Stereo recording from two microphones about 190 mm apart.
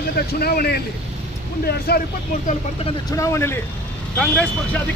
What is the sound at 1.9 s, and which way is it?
Speech, 55° left (ahead or behind).